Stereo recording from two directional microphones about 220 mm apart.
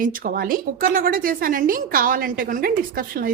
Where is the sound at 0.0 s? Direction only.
40° right (ahead or behind).